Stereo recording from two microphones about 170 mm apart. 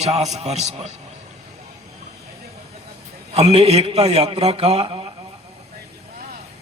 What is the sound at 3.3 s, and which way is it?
A man's voice, 35° right (ahead or behind).